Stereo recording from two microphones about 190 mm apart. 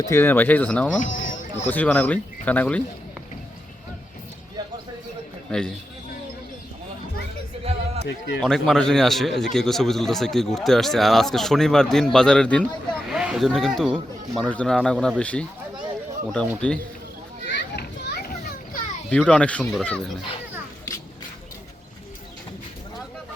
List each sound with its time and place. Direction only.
0.0 s speech: 15° left (ahead or behind)
0.9 s a sound: 45° left (ahead or behind)
1.7 s speech: 5° left (ahead or behind)
5.5 s a man's voice: 5° left (ahead or behind)
7.6 s a sound: 30° right (ahead or behind)
8.4 s a man's voice: centre (ahead or behind)
14.9 s a man's voice: 5° right (ahead or behind)
15.2 s speech: 5° left (ahead or behind)
16.6 s speech: 5° left (ahead or behind)
17.5 s children playing: 55° left (ahead or behind)
19.1 s speech: 5° left (ahead or behind)